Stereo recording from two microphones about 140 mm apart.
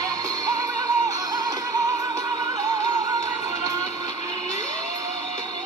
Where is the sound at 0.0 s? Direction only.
25° right (ahead or behind).